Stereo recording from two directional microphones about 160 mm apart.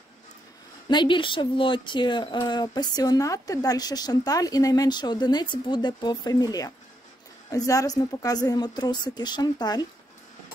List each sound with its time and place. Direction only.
0.8 s speech: 30° left (ahead or behind)